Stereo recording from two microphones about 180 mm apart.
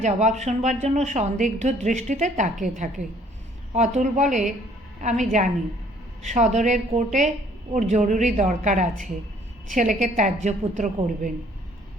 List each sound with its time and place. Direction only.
0.0 s a woman's voice: 40° right (ahead or behind)